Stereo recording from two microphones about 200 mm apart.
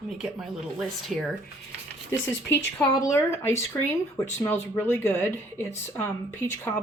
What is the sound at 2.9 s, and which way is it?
Speech, 15° left (ahead or behind).